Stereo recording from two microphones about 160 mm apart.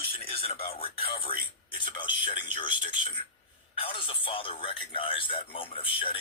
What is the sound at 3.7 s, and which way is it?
Speech, 35° left (ahead or behind).